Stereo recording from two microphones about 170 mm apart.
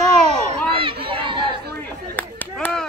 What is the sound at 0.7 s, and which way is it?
Crowd, 30° right (ahead or behind).